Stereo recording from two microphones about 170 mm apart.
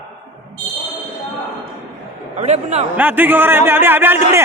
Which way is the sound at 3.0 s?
10° right (ahead or behind).